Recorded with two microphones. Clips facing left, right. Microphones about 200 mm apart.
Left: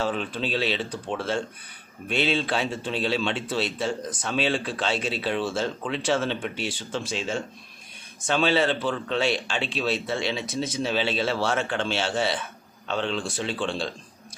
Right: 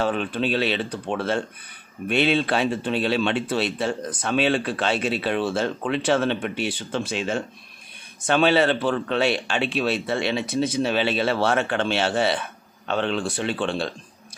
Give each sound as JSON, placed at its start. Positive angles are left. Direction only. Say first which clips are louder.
{"t": 0.0, "sound": "speech", "louder": "right 4 dB", "side_deg": -60}